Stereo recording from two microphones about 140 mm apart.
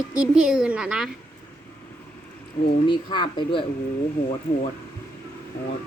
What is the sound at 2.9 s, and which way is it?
Speech, 35° left (ahead or behind).